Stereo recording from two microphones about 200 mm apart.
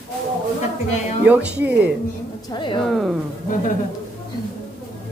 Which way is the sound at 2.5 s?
25° left (ahead or behind).